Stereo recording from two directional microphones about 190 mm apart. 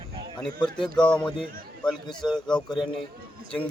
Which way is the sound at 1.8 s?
25° left (ahead or behind).